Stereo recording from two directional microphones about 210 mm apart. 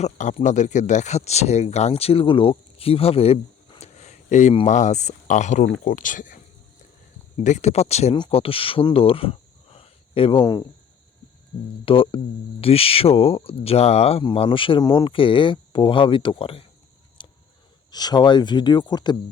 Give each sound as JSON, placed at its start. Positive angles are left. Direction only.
{"t": 0.0, "sound": "speech", "side_deg": 35}
{"t": 11.9, "sound": "speech", "side_deg": 25}
{"t": 17.2, "sound": "a sound", "side_deg": 25}
{"t": 17.9, "sound": "speech", "side_deg": 20}